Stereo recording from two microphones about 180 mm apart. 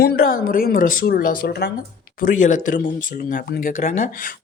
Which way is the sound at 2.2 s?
45° left (ahead or behind).